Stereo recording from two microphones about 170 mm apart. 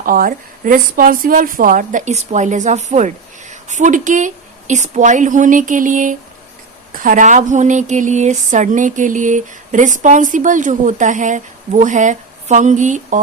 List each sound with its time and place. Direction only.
0.0 s speech: 55° right (ahead or behind)